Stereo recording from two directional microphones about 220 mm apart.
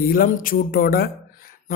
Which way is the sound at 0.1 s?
40° left (ahead or behind).